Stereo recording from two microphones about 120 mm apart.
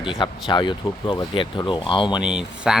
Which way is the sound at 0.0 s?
45° left (ahead or behind).